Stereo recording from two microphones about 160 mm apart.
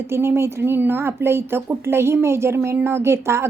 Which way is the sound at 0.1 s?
15° right (ahead or behind).